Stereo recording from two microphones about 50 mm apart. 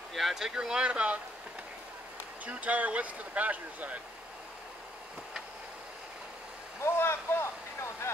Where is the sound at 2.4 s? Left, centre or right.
Right.